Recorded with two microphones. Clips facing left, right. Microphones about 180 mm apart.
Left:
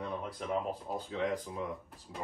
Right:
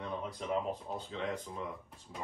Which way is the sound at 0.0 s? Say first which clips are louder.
Left 1 dB; centre (ahead or behind).